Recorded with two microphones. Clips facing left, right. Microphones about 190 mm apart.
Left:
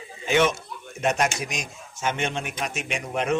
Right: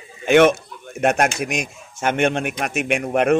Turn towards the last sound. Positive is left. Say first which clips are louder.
# right 8 dB
turn(degrees=-60)  # may be behind; listen again after turning